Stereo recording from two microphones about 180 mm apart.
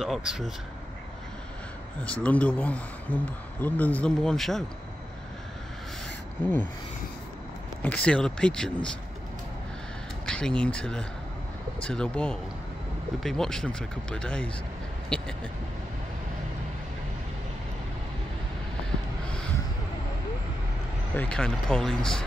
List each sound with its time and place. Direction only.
0.0 s speech: centre (ahead or behind)
2.2 s speech: 5° left (ahead or behind)
7.8 s speech: 5° left (ahead or behind)
10.2 s speech: 5° left (ahead or behind)
15.0 s a sound: 5° left (ahead or behind)
21.1 s speech: 5° left (ahead or behind)